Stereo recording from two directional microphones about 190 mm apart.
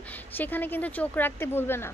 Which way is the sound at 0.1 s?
10° left (ahead or behind).